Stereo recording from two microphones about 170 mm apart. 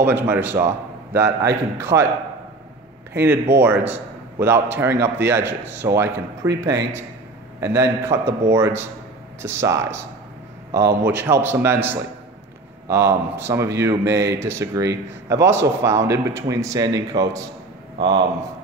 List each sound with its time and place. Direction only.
0.0 s a man's voice: 10° right (ahead or behind)
3.1 s a man's voice: 10° right (ahead or behind); by 18.2 s 30° right (ahead or behind)